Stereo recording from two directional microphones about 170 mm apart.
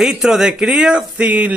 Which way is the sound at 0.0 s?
Centre (ahead or behind).